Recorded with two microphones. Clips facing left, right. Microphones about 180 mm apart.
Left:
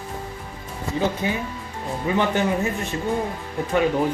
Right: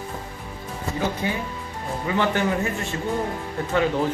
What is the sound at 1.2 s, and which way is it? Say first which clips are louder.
Speech: left 1 dB; 20° left (ahead or behind).